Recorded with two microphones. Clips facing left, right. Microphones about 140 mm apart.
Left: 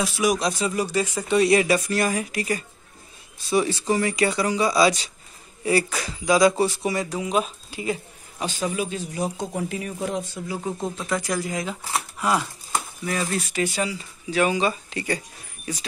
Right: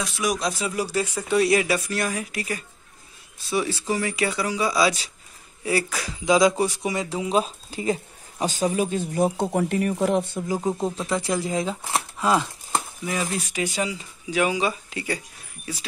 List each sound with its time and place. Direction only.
0.0 s speech: 5° left (ahead or behind)
6.2 s speech: 20° right (ahead or behind); by 9.0 s 40° right (ahead or behind)
9.0 s speech: 55° right (ahead or behind)
10.7 s speech: 5° right (ahead or behind)
11.1 s speech: 25° right (ahead or behind)
12.4 s speech: 15° right (ahead or behind)